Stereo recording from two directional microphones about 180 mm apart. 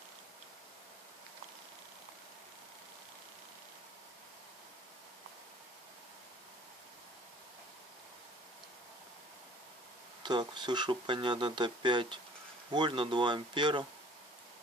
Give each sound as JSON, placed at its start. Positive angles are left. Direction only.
{"t": 10.2, "sound": "speech", "side_deg": -25}